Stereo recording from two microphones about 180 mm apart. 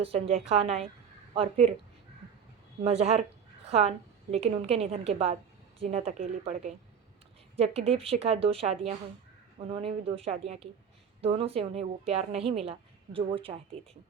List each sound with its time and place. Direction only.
0.0 s a woman's voice: 35° right (ahead or behind)
2.8 s a woman's voice: 35° right (ahead or behind)